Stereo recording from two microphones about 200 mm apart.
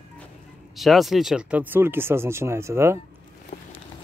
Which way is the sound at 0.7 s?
Centre (ahead or behind).